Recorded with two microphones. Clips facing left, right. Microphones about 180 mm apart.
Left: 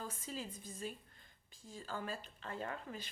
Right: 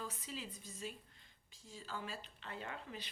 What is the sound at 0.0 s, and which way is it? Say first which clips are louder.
A woman's voice: left 2 dB; 50° left (ahead or behind).